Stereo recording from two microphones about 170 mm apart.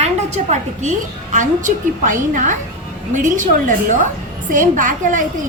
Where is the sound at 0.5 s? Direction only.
45° right (ahead or behind).